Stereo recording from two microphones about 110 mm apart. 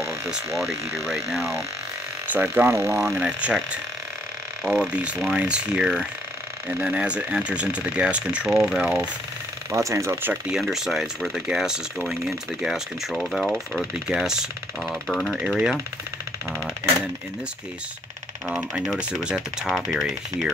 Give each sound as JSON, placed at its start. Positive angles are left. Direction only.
{"t": 0.6, "sound": "speech", "side_deg": 0}
{"t": 2.2, "sound": "speech", "side_deg": -15}
{"t": 3.4, "sound": "speech", "side_deg": -10}
{"t": 4.6, "sound": "speech", "side_deg": -10}
{"t": 9.7, "sound": "speech", "side_deg": -25}
{"t": 10.6, "sound": "speech", "side_deg": 0}
{"t": 15.0, "sound": "speech", "side_deg": 5}
{"t": 18.5, "sound": "speech", "side_deg": -5}